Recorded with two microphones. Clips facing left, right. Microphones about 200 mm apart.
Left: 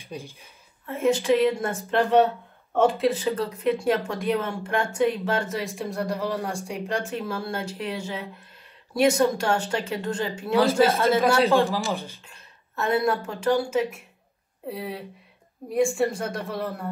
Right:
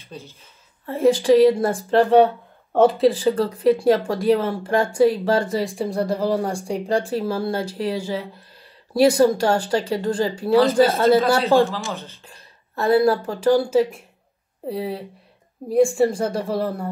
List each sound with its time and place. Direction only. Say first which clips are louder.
0.0 s speech: left 1 dB; 15° left (ahead or behind)
0.8 s speech: right 5 dB; 35° right (ahead or behind)
11.9 s speech: left 2 dB; 10° left (ahead or behind)
12.3 s a woman's voice: right 4 dB; 35° right (ahead or behind)
15.8 s speech: right 5 dB; centre (ahead or behind)
16.1 s speech: right 7 dB; 30° right (ahead or behind)